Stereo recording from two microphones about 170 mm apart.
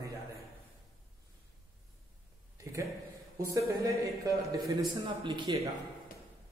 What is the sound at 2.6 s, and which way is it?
A man's voice, 20° right (ahead or behind).